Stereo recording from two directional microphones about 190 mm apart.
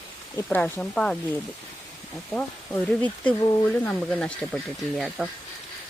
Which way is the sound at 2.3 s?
5° left (ahead or behind).